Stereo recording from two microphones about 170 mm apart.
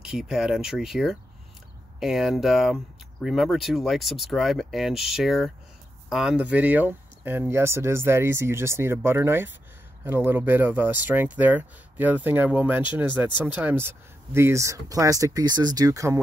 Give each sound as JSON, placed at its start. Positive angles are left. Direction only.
{"t": 0.0, "sound": "speech", "side_deg": 0}